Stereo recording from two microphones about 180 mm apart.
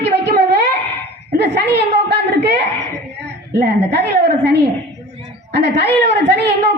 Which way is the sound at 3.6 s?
65° right (ahead or behind).